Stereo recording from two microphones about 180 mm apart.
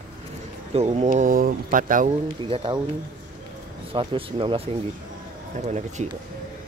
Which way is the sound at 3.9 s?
30° right (ahead or behind).